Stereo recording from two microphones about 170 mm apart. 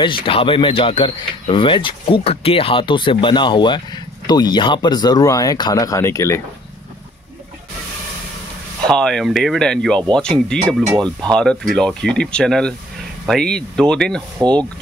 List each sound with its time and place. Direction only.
0.0 s speech: 30° left (ahead or behind)
8.8 s speech: 5° left (ahead or behind)